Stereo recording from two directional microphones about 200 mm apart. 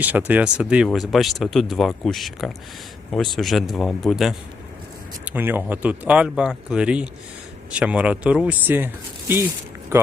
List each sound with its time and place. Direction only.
0.0 s speech: 10° right (ahead or behind)
9.9 s speech: 10° right (ahead or behind)